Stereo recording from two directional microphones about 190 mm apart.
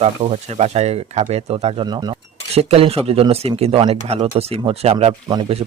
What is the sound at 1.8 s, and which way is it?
Speech, 20° right (ahead or behind).